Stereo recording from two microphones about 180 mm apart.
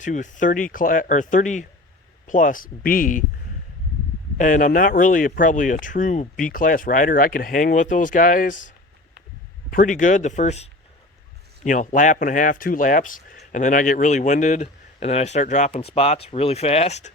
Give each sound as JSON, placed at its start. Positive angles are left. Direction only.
{"t": 0.0, "sound": "speech", "side_deg": 45}
{"t": 4.4, "sound": "a man's voice", "side_deg": 45}